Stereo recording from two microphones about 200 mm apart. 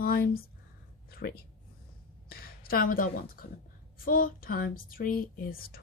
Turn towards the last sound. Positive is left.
turn(degrees=50)  # may be behind; listen again after turning